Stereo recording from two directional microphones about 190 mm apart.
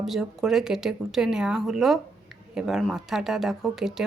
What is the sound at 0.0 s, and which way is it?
A woman's voice, centre (ahead or behind).